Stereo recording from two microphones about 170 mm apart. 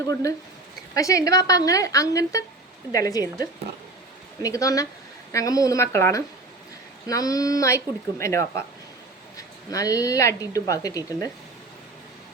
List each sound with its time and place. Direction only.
0.1 s speech: 20° left (ahead or behind)
4.4 s speech: 20° left (ahead or behind)
9.6 s speech: 20° left (ahead or behind)